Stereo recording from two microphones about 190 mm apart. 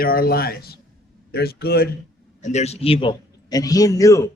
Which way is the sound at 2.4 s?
35° left (ahead or behind).